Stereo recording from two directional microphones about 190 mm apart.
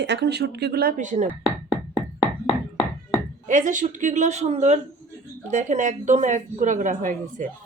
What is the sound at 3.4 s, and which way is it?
A woman's voice, 40° right (ahead or behind).